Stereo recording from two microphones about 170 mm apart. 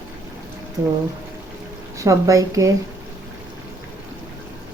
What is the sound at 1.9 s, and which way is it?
Speech, 20° right (ahead or behind).